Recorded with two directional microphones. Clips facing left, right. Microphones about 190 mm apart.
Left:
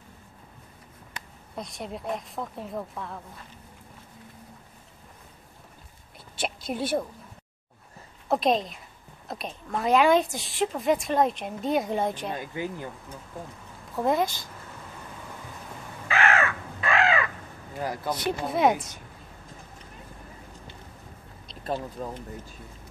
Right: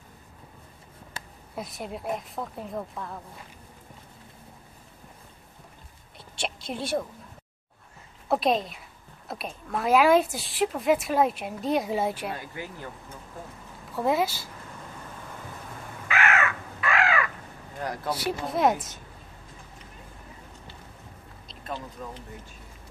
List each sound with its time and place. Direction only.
1.5 s a woman's voice: 5° right (ahead or behind)
6.3 s a woman's voice: 5° left (ahead or behind)
8.3 s a woman's voice: centre (ahead or behind)
12.3 s speech: 20° left (ahead or behind)
13.9 s a woman's voice: 5° right (ahead or behind)
16.1 s crow: 30° left (ahead or behind)
17.7 s a woman's voice: 5° left (ahead or behind)
21.6 s speech: 45° left (ahead or behind)